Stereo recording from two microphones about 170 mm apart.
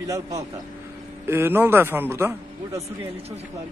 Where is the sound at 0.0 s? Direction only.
20° right (ahead or behind).